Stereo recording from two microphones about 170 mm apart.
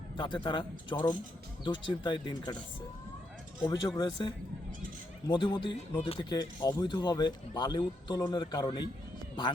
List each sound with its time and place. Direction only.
0.2 s speech: 30° left (ahead or behind)
3.6 s speech: 25° left (ahead or behind)